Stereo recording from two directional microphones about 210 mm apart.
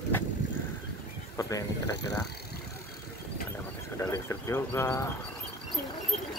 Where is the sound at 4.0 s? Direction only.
15° left (ahead or behind).